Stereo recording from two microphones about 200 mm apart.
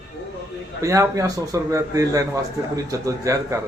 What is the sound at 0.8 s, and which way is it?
A man's voice, 15° right (ahead or behind).